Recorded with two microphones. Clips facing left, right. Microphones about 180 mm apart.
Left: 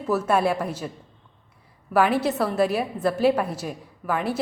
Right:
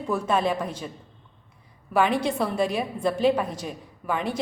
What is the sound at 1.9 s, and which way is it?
A woman's voice, 5° left (ahead or behind).